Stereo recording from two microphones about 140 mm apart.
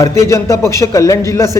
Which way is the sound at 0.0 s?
20° left (ahead or behind).